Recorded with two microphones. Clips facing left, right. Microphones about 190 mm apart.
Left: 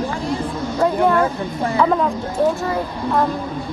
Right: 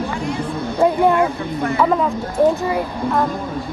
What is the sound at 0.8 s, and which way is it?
Speech, 15° right (ahead or behind).